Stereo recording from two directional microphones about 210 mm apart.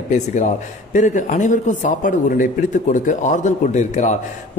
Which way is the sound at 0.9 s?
35° left (ahead or behind).